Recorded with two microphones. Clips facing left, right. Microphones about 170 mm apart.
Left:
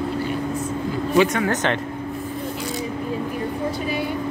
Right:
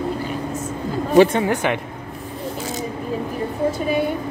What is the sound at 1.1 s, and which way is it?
Speech, 30° right (ahead or behind).